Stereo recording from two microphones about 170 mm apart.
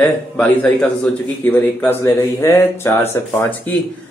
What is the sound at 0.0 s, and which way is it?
Speech, 10° left (ahead or behind).